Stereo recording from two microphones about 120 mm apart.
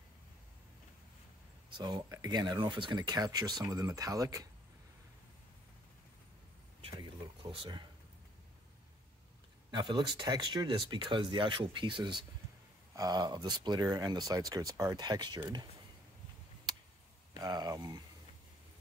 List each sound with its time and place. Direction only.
1.8 s speech: 35° right (ahead or behind)
9.7 s speech: 40° right (ahead or behind)
17.4 s speech: 35° right (ahead or behind)